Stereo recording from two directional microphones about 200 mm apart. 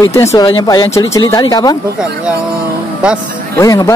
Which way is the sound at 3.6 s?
15° left (ahead or behind).